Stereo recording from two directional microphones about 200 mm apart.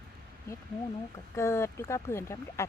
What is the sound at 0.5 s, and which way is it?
Speech, 15° left (ahead or behind).